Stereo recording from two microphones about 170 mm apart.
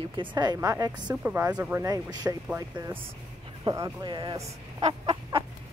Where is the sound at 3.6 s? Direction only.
25° right (ahead or behind).